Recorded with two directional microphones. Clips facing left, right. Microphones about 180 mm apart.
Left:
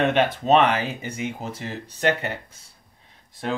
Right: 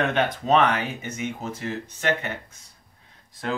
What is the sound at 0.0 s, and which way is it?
Speech, 25° left (ahead or behind).